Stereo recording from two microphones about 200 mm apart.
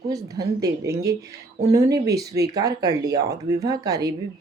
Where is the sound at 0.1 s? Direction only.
15° right (ahead or behind).